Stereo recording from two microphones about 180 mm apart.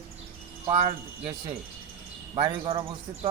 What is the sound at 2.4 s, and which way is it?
Speech, 30° right (ahead or behind).